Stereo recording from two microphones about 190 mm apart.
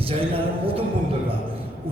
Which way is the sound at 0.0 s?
30° right (ahead or behind).